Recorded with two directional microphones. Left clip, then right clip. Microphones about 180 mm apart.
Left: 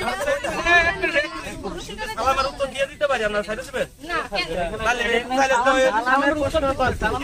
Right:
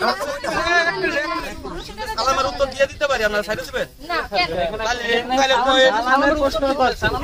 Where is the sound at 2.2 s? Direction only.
15° right (ahead or behind).